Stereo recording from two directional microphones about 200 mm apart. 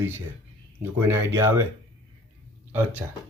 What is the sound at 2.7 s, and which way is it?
Speech, 10° right (ahead or behind).